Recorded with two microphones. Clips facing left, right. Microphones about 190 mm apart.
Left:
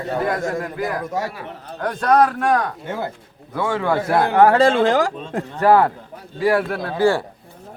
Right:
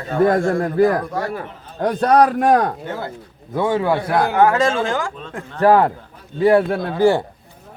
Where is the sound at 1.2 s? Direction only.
50° right (ahead or behind).